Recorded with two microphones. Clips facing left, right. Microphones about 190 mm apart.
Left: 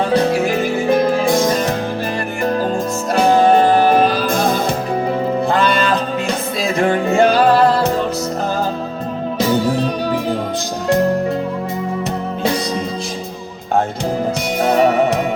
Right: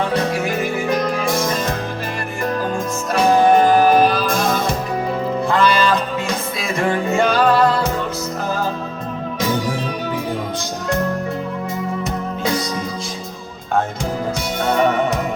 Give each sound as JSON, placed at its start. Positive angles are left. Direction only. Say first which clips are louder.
{"t": 0.1, "sound": "music", "louder": "left 5 dB", "side_deg": 30}
{"t": 3.2, "sound": "music", "louder": "left 1 dB", "side_deg": 30}
{"t": 6.7, "sound": "music", "louder": "left 4 dB", "side_deg": 30}
{"t": 10.8, "sound": "music", "louder": "left 6 dB", "side_deg": 35}